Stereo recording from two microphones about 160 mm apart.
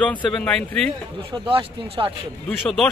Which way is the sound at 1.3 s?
35° right (ahead or behind).